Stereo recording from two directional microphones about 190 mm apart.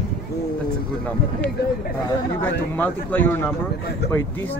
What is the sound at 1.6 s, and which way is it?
Speech, 55° left (ahead or behind).